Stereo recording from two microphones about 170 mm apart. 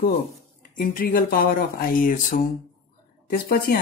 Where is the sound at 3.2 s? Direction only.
60° left (ahead or behind).